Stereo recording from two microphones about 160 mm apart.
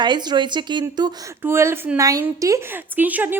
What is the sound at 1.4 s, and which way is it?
Speech, 15° right (ahead or behind).